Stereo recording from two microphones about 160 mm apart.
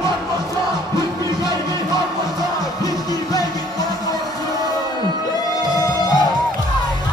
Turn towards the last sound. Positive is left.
turn(degrees=25)  # may be behind; listen again after turning